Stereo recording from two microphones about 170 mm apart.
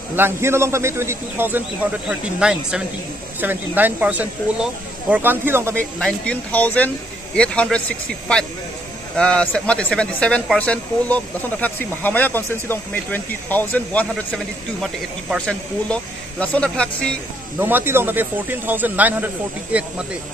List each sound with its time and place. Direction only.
0.1 s a man's voice: 15° right (ahead or behind)
5.8 s speech: 5° left (ahead or behind)
17.6 s a man's voice: 10° right (ahead or behind)